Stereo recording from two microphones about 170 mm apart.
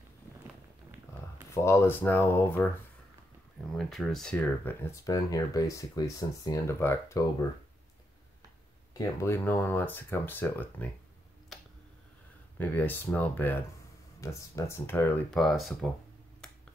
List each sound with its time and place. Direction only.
1.5 s speech: 15° left (ahead or behind)
3.7 s speech: centre (ahead or behind); by 7.4 s 20° left (ahead or behind)
8.9 s speech: 15° left (ahead or behind)
12.5 s speech: 10° left (ahead or behind)